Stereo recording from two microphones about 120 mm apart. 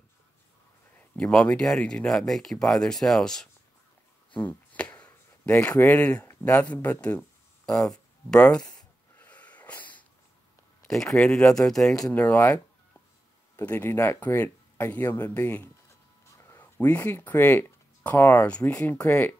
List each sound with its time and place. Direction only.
1.1 s speech: 10° left (ahead or behind)
4.3 s a sound: 10° left (ahead or behind)
6.2 s speech: 15° left (ahead or behind)
8.7 s a sound: 10° left (ahead or behind)
10.9 s speech: 5° left (ahead or behind)
12.1 s speech: 15° left (ahead or behind)
13.6 s speech: 15° left (ahead or behind)